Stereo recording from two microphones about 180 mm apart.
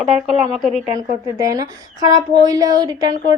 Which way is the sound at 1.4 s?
20° right (ahead or behind).